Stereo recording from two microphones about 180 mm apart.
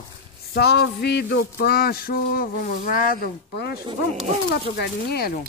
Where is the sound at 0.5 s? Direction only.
65° left (ahead or behind).